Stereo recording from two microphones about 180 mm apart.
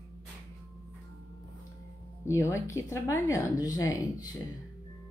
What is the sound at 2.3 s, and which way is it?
Speech, 15° left (ahead or behind).